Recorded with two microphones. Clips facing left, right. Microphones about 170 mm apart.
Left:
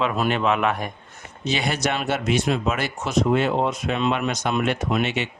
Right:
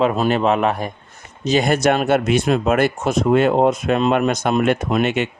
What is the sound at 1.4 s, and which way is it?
Speech, 45° right (ahead or behind).